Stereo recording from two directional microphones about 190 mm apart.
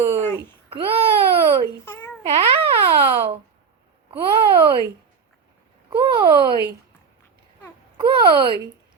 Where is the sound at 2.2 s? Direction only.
30° right (ahead or behind).